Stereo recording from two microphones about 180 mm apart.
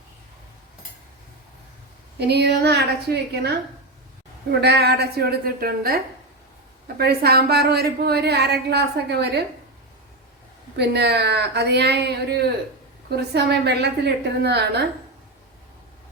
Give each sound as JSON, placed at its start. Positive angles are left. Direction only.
{"t": 2.1, "sound": "a woman's voice", "side_deg": -65}
{"t": 4.6, "sound": "a woman's voice", "side_deg": -65}
{"t": 10.8, "sound": "a woman's voice", "side_deg": -65}